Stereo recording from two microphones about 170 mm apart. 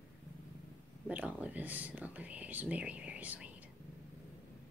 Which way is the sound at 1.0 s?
10° right (ahead or behind).